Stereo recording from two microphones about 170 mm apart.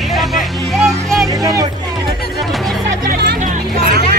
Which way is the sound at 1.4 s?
20° right (ahead or behind).